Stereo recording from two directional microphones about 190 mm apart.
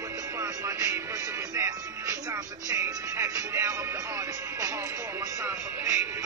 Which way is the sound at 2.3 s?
15° right (ahead or behind).